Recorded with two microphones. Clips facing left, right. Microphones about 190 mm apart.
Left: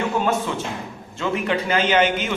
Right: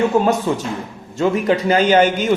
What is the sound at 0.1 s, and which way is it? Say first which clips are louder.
A man's voice: right 6 dB; 35° right (ahead or behind).